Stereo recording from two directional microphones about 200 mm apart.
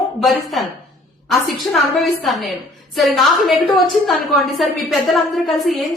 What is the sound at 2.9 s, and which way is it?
A woman's voice, centre (ahead or behind).